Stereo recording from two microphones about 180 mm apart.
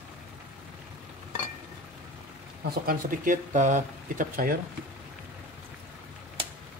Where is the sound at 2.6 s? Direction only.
50° right (ahead or behind).